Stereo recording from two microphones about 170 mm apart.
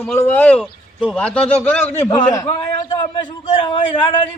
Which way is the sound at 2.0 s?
20° left (ahead or behind).